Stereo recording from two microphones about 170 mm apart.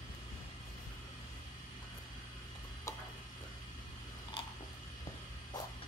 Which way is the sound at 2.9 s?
20° left (ahead or behind).